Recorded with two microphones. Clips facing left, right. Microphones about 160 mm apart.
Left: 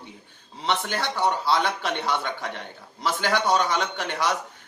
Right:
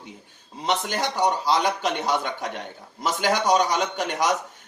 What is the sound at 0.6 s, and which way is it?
A man's voice, 15° right (ahead or behind).